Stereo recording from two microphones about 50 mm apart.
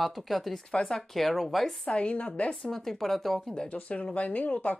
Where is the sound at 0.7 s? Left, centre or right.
Left.